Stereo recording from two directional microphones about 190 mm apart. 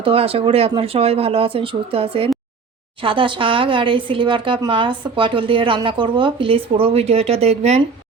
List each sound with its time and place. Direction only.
0.0 s speech: 30° right (ahead or behind)